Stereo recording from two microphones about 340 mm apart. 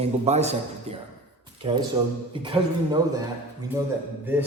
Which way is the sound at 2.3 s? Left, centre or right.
Centre.